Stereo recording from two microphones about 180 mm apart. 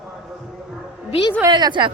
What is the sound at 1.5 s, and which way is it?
Speech, 25° right (ahead or behind).